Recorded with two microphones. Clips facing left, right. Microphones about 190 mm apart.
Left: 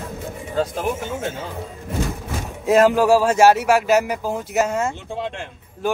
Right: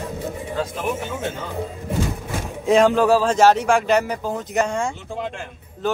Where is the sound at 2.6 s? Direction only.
5° left (ahead or behind).